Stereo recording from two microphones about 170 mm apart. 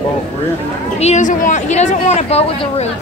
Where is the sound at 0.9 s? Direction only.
40° left (ahead or behind).